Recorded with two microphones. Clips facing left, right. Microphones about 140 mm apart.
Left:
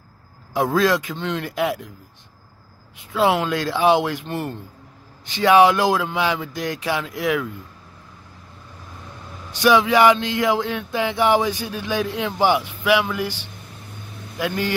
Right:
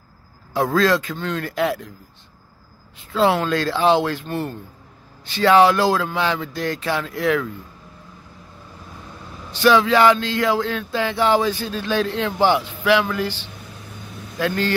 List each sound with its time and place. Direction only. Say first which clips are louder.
0.5 s speech: right 1 dB; 20° left (ahead or behind)
3.0 s speech: right 1 dB; 15° left (ahead or behind)
9.5 s speech: right 1 dB; 15° left (ahead or behind)
14.4 s speech: right 2 dB; 15° left (ahead or behind)